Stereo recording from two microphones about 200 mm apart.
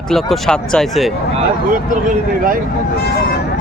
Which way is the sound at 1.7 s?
45° right (ahead or behind).